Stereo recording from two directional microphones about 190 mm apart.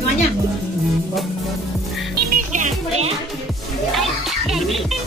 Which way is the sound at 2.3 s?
40° right (ahead or behind).